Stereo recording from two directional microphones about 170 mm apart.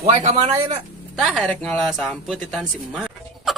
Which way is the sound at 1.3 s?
5° left (ahead or behind).